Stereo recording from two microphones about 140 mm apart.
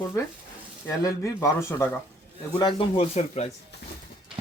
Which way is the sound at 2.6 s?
40° left (ahead or behind).